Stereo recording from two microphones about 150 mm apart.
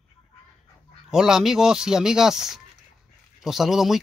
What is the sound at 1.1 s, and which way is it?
Speech, 5° right (ahead or behind).